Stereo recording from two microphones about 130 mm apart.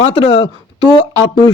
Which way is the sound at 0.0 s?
45° left (ahead or behind).